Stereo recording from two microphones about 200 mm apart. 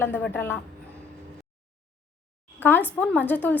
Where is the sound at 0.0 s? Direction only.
10° left (ahead or behind).